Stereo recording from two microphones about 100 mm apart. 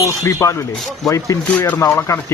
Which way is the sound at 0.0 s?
30° left (ahead or behind).